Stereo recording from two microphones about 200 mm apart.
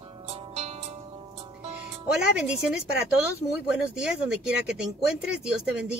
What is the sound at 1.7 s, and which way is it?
Music, 5° right (ahead or behind).